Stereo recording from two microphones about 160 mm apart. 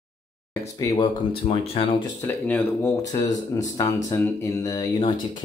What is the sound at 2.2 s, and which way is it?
Speech, 10° left (ahead or behind).